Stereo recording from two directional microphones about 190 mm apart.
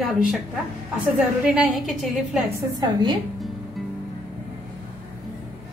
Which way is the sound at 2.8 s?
20° right (ahead or behind).